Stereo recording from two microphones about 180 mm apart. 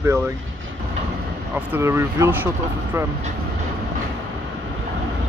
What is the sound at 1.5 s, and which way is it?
Speech, 10° right (ahead or behind).